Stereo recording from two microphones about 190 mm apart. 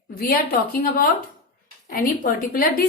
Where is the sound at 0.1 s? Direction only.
50° left (ahead or behind).